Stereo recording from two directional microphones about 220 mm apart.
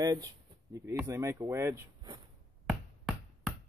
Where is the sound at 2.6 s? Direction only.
5° right (ahead or behind).